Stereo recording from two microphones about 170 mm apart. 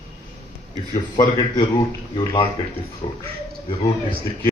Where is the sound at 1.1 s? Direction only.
25° left (ahead or behind).